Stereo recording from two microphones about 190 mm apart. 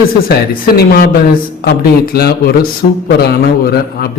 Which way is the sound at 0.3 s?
55° left (ahead or behind).